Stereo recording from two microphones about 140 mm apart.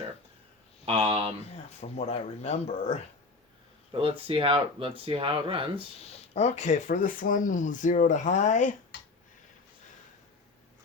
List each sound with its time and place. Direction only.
0.9 s speech: 45° right (ahead or behind)
1.8 s speech: 50° left (ahead or behind)
3.9 s speech: 40° right (ahead or behind)
6.1 s speech: 50° left (ahead or behind)